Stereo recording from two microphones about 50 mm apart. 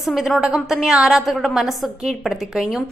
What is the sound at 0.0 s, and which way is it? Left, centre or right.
A woman's voice, centre.